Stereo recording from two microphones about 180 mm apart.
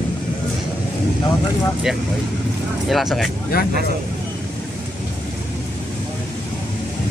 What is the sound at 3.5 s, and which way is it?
Speech, 55° left (ahead or behind).